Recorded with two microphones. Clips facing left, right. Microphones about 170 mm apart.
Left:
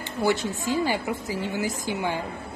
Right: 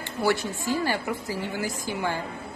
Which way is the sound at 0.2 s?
20° left (ahead or behind).